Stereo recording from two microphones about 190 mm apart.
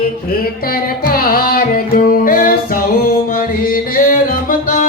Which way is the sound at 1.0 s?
50° left (ahead or behind).